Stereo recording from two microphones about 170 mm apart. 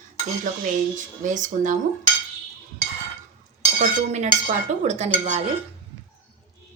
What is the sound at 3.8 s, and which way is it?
Speech, 45° right (ahead or behind).